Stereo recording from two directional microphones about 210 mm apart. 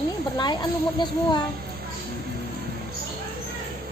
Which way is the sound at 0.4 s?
20° left (ahead or behind).